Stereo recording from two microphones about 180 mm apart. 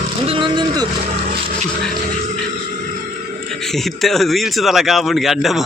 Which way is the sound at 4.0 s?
Centre (ahead or behind).